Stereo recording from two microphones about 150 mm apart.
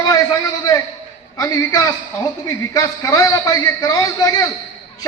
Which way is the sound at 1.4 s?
25° left (ahead or behind).